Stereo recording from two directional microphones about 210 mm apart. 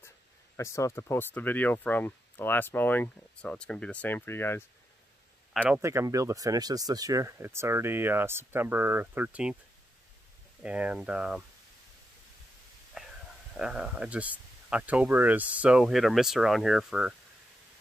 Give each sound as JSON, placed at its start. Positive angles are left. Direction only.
{"t": 0.6, "sound": "speech", "side_deg": 15}
{"t": 5.5, "sound": "speech", "side_deg": 0}
{"t": 5.8, "sound": "speech", "side_deg": -15}
{"t": 10.6, "sound": "speech", "side_deg": -5}
{"t": 13.0, "sound": "whispering", "side_deg": -5}
{"t": 13.6, "sound": "speech", "side_deg": -5}